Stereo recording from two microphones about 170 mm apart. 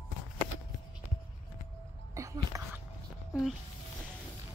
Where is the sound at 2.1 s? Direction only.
20° right (ahead or behind).